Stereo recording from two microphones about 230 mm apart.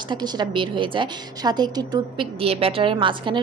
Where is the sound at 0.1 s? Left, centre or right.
Centre.